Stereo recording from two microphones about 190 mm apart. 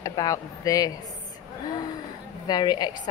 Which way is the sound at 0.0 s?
20° left (ahead or behind).